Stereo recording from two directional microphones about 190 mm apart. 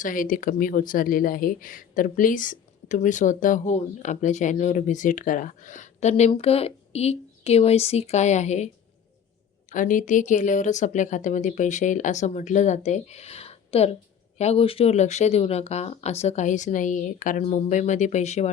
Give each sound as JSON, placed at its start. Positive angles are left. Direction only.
{"t": 0.0, "sound": "speech", "side_deg": 45}